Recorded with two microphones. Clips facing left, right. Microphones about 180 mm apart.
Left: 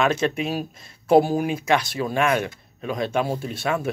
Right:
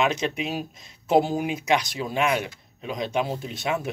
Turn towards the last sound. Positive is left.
turn(degrees=-20)  # may be behind; listen again after turning